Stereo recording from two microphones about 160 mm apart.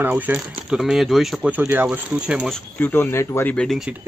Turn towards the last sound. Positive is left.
turn(degrees=0)  # may be behind; listen again after turning